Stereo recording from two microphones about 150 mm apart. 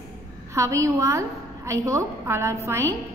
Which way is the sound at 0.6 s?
20° right (ahead or behind).